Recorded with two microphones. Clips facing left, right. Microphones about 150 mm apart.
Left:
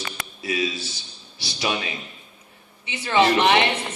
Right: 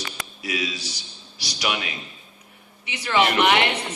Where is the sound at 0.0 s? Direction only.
25° left (ahead or behind).